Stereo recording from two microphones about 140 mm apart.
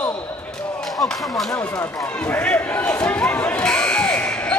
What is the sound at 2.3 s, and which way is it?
Fire alarm, 15° left (ahead or behind).